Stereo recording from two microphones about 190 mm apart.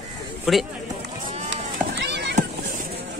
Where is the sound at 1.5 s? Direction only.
65° right (ahead or behind).